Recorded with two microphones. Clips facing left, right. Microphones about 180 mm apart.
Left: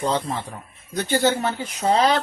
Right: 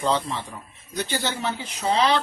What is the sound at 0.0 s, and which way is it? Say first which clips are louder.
Speech: left 1 dB; 45° left (ahead or behind).